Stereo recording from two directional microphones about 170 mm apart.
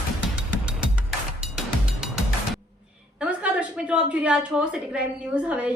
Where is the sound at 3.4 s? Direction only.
5° right (ahead or behind).